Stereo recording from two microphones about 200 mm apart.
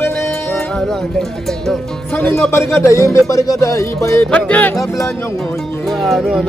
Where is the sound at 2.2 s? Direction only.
10° left (ahead or behind).